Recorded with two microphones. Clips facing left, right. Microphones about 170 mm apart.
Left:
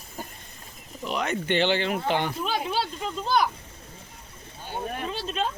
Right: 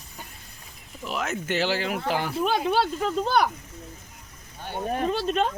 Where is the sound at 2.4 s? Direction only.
55° right (ahead or behind).